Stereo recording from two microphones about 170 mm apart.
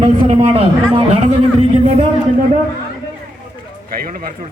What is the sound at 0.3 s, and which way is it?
Speech, 30° right (ahead or behind).